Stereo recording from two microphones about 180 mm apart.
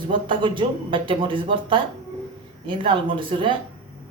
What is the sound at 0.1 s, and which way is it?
A man's voice, 25° right (ahead or behind).